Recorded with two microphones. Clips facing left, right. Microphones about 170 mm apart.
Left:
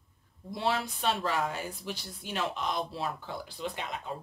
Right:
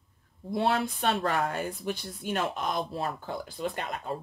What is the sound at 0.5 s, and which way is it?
Speech, 55° right (ahead or behind).